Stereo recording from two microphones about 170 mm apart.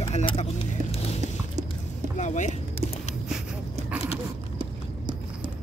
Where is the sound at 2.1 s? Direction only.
45° left (ahead or behind).